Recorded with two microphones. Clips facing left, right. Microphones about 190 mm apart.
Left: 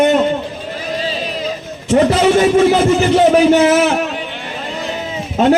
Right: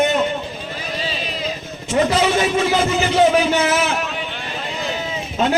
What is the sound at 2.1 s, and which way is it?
A man's voice, 50° left (ahead or behind).